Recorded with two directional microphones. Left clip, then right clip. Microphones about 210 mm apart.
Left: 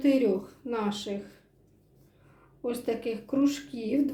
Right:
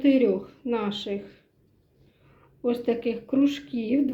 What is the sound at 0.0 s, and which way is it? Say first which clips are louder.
Speech: right 3 dB; 25° right (ahead or behind).